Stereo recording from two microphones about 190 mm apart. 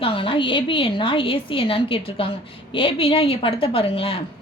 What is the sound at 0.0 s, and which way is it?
A woman's voice, 30° left (ahead or behind).